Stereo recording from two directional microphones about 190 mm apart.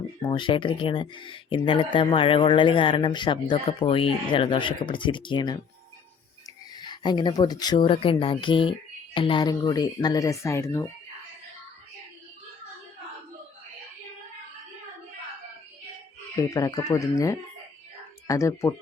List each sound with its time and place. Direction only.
0.3 s speech: 25° left (ahead or behind)
6.7 s speech: 25° left (ahead or behind)
16.4 s speech: 20° left (ahead or behind)